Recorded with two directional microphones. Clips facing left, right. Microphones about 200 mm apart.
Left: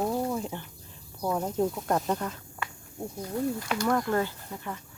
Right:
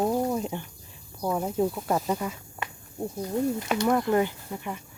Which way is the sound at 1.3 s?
5° right (ahead or behind).